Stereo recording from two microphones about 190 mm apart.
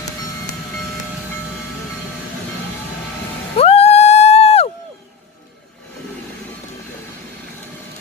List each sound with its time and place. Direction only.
3.5 s music: 30° left (ahead or behind)